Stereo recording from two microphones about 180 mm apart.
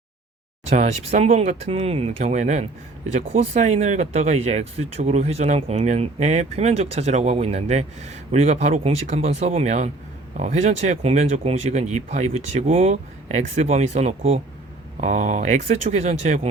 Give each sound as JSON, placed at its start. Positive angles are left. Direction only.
{"t": 0.7, "sound": "speech", "side_deg": -40}